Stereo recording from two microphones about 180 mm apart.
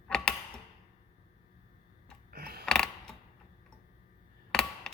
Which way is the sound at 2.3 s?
60° right (ahead or behind).